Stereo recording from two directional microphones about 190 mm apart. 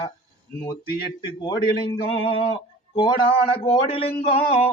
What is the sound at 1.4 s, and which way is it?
Speech, 25° left (ahead or behind).